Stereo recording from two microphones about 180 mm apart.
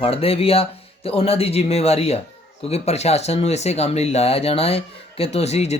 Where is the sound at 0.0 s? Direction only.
30° left (ahead or behind).